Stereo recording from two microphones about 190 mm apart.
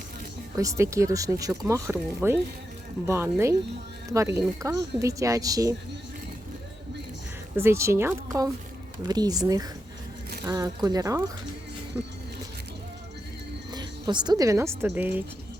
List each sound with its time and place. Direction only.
0.5 s speech: 15° right (ahead or behind)
7.5 s speech: 15° right (ahead or behind)
13.7 s a woman's voice: 20° right (ahead or behind)